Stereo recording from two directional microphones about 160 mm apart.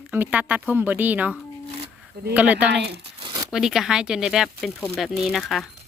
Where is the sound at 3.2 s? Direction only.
25° right (ahead or behind).